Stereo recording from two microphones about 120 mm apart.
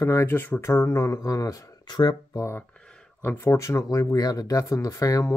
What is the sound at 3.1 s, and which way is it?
Speech, 20° left (ahead or behind).